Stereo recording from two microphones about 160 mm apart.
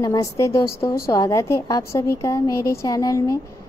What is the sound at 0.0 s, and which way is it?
A woman's voice, 20° left (ahead or behind).